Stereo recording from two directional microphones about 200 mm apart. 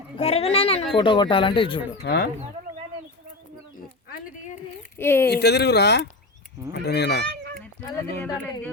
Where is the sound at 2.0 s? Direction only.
60° left (ahead or behind).